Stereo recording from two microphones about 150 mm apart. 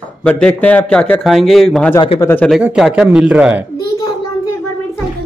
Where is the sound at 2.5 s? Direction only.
5° right (ahead or behind).